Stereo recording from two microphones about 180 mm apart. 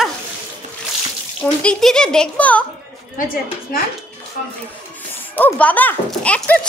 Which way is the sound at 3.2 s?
50° left (ahead or behind).